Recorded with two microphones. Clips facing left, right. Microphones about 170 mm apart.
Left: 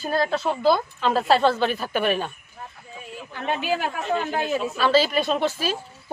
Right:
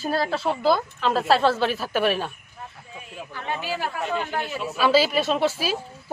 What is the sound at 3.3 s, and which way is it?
Speech, 20° left (ahead or behind).